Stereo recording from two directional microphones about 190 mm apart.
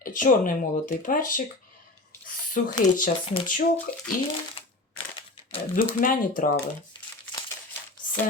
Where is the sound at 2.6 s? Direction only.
45° left (ahead or behind).